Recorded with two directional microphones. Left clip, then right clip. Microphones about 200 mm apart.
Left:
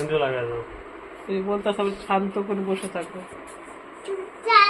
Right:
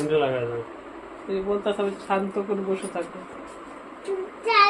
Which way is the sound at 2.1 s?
20° left (ahead or behind).